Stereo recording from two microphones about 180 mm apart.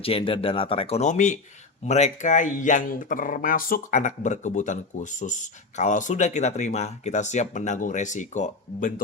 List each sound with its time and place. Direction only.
0.0 s speech: 30° left (ahead or behind)